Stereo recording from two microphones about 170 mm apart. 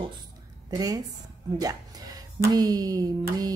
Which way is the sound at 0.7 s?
20° right (ahead or behind).